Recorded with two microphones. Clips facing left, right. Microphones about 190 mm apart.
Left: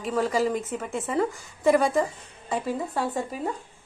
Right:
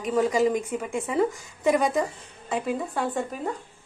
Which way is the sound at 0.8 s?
15° right (ahead or behind).